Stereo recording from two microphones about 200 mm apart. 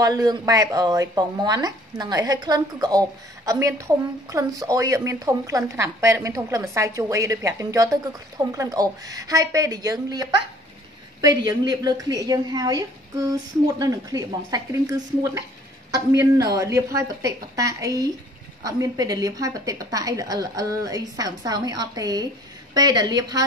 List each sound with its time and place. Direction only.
0.0 s a woman's voice: 20° right (ahead or behind)